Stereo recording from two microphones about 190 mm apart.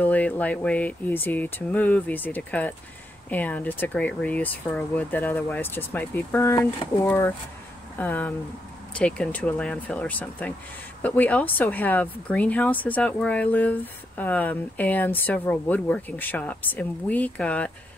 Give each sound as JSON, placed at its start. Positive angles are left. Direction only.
{"t": 0.0, "sound": "speech", "side_deg": 10}